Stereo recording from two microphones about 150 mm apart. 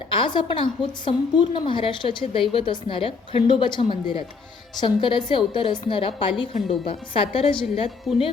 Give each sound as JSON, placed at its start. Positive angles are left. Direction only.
{"t": 0.1, "sound": "a woman's voice", "side_deg": 35}